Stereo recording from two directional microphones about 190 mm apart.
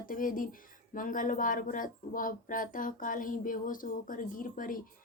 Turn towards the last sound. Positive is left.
turn(degrees=45)  # may be behind; listen again after turning